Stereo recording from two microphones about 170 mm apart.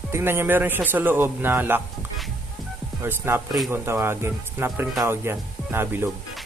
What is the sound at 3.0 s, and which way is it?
Speech, 15° right (ahead or behind).